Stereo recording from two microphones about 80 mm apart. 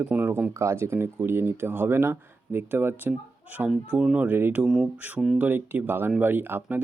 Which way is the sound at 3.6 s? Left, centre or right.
Centre.